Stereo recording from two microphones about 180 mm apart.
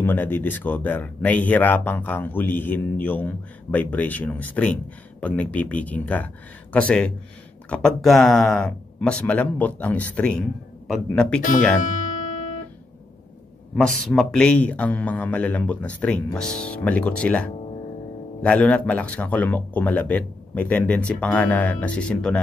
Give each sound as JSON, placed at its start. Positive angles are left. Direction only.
{"t": 0.0, "sound": "speech", "side_deg": 10}
{"t": 11.8, "sound": "music", "side_deg": 45}
{"t": 13.7, "sound": "speech", "side_deg": 5}